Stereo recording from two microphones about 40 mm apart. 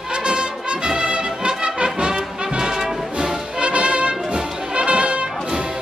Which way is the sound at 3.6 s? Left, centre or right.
Right.